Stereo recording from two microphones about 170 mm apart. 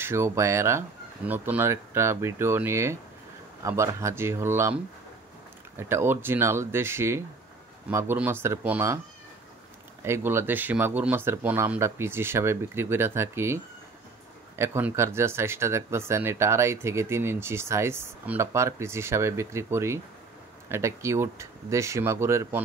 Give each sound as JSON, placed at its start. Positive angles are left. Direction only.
{"t": 0.0, "sound": "speech", "side_deg": -15}
{"t": 5.8, "sound": "speech", "side_deg": -15}
{"t": 10.0, "sound": "speech", "side_deg": -15}
{"t": 14.6, "sound": "speech", "side_deg": -15}